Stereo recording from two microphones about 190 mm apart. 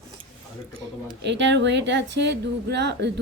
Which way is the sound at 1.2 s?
70° right (ahead or behind).